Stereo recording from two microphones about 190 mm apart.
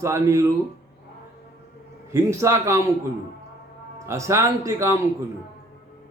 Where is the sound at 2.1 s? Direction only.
15° right (ahead or behind).